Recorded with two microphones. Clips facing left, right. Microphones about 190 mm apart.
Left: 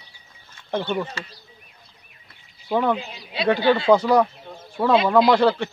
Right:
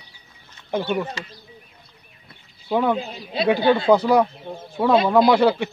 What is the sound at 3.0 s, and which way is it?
Speech, 45° right (ahead or behind).